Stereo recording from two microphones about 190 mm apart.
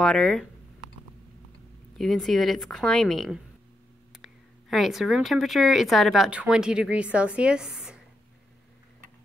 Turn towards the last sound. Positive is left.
turn(degrees=-5)  # may be behind; listen again after turning